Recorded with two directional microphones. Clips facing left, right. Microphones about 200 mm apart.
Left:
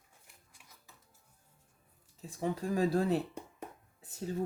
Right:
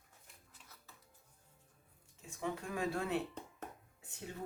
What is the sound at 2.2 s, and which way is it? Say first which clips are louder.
Speech: left 6 dB; 35° left (ahead or behind).